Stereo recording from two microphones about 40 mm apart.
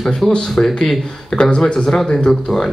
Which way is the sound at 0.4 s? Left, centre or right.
Centre.